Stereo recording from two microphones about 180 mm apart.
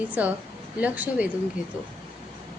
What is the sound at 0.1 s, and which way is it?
A woman's voice, 10° right (ahead or behind).